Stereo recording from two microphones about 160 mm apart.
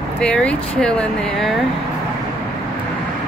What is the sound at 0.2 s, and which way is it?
Speech, 5° left (ahead or behind).